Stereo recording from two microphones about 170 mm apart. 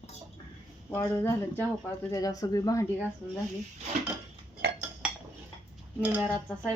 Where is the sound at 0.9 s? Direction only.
15° left (ahead or behind).